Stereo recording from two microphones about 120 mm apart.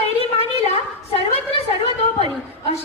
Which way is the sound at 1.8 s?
55° left (ahead or behind).